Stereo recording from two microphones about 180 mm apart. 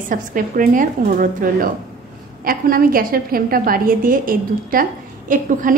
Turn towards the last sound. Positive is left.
turn(degrees=-45)  # may be behind; listen again after turning